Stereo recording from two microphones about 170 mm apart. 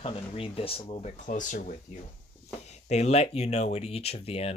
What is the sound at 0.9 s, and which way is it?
Speech, 45° left (ahead or behind).